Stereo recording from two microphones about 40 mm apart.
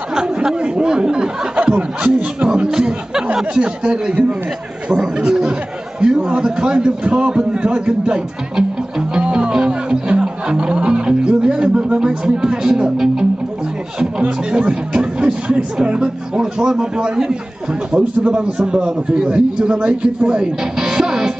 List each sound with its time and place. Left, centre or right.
0.1 s speech: centre
1.6 s a man's voice: right
2.7 s chatter: centre
3.3 s a man's voice: right
9.1 s music: right
11.7 s a man's voice: right
14.5 s a man's voice: right